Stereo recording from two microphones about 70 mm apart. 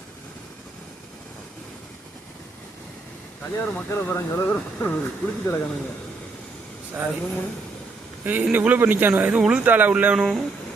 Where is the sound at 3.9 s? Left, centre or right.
Left.